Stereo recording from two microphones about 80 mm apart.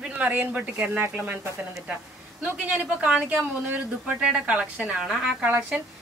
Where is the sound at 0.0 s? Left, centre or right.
Centre.